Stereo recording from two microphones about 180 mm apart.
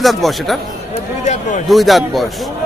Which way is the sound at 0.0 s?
Centre (ahead or behind).